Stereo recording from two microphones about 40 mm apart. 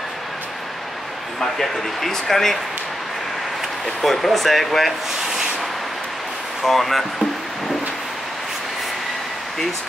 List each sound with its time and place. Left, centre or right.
1.4 s speech: centre
3.8 s speech: centre
6.6 s speech: centre